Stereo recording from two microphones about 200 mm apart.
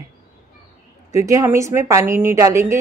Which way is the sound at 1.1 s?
15° right (ahead or behind).